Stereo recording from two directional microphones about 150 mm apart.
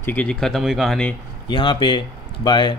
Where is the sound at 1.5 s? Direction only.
35° left (ahead or behind).